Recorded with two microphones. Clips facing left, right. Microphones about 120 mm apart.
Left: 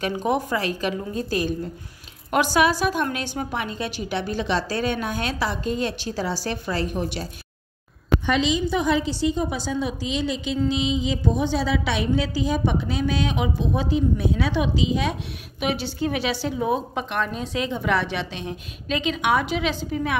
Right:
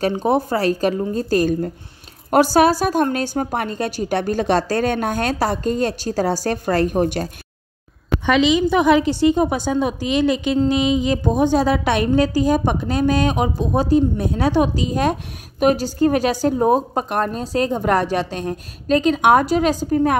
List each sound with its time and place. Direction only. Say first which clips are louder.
0.0 s a woman's voice: right 5 dB; 35° right (ahead or behind); by 7.2 s 50° right (ahead or behind)
8.3 s a woman's voice: right 8 dB; 75° right (ahead or behind); by 20.2 s 45° right (ahead or behind)